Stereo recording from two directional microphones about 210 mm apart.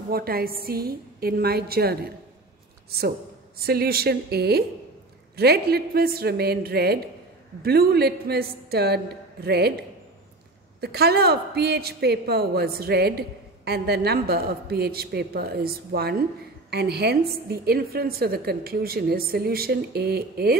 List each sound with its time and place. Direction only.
0.1 s a woman's voice: 45° right (ahead or behind)
3.5 s a woman's voice: 45° right (ahead or behind)